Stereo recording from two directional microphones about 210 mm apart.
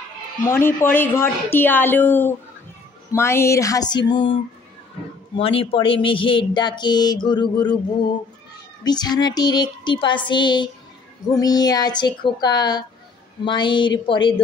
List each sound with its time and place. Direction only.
0.4 s a woman's voice: 10° left (ahead or behind)
8.8 s speech: 20° left (ahead or behind)